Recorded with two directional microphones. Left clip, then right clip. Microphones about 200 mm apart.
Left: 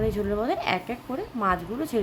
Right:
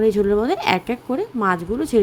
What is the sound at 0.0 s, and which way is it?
A woman's voice, 25° right (ahead or behind).